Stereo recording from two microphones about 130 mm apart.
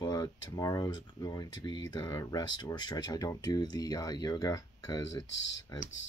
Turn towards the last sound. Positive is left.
turn(degrees=30)  # may be behind; listen again after turning